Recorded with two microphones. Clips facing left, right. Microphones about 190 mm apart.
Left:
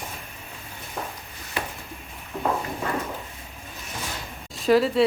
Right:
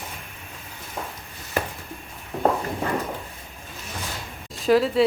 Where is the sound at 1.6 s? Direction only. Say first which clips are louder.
Right 5 dB; 45° right (ahead or behind).